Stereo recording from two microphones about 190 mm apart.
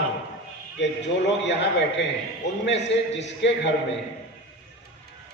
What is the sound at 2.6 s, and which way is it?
Speech, 65° left (ahead or behind).